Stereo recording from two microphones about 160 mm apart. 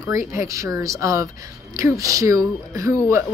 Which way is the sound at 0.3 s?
20° right (ahead or behind).